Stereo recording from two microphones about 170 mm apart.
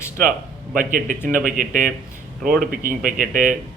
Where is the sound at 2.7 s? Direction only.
55° right (ahead or behind).